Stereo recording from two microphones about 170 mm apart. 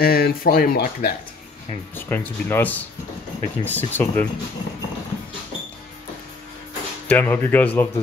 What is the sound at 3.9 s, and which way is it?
Speech, 10° left (ahead or behind).